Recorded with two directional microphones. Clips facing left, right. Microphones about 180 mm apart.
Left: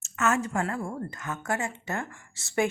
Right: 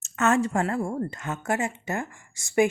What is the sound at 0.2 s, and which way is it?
Speech, 35° right (ahead or behind).